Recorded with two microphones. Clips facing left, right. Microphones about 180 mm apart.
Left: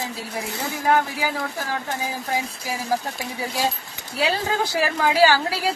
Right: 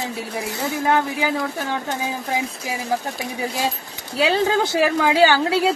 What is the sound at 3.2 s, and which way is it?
A woman's voice, 20° right (ahead or behind).